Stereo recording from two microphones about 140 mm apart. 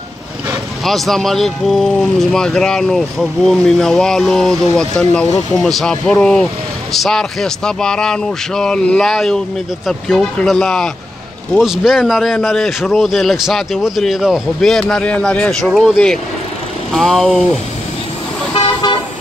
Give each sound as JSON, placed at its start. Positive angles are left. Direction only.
{"t": 0.8, "sound": "a man's voice", "side_deg": 0}
{"t": 18.5, "sound": "vehicle", "side_deg": 35}